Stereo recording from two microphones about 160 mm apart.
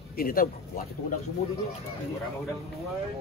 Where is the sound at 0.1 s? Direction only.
65° left (ahead or behind).